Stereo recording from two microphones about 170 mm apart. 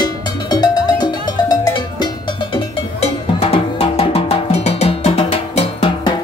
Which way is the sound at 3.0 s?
35° left (ahead or behind).